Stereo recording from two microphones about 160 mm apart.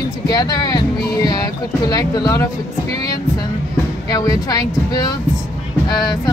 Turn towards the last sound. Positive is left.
turn(degrees=25)  # may be behind; listen again after turning